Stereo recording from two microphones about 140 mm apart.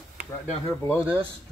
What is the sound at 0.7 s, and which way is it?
Speech, 20° left (ahead or behind).